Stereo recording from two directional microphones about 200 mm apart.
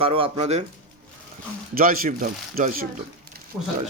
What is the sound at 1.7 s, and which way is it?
Speech, 45° right (ahead or behind).